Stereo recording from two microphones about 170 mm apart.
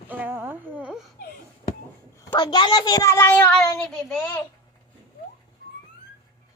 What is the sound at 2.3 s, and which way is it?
A child's voice, 25° left (ahead or behind).